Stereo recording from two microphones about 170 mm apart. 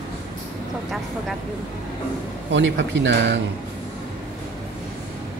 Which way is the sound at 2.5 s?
90° right.